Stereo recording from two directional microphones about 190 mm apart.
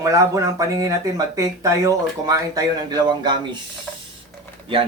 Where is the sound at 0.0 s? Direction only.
15° right (ahead or behind).